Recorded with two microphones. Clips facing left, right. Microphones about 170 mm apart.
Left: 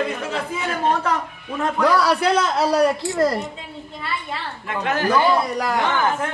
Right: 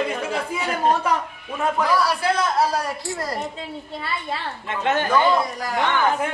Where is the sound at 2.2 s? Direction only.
70° left (ahead or behind).